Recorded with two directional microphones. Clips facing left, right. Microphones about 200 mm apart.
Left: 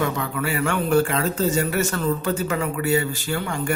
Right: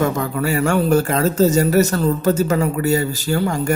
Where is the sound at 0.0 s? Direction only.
40° right (ahead or behind).